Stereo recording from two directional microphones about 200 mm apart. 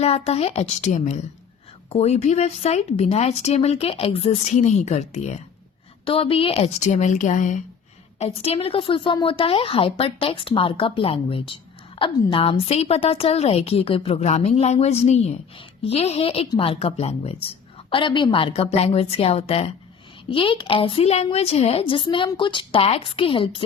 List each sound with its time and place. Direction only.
0.0 s a woman's voice: 30° left (ahead or behind)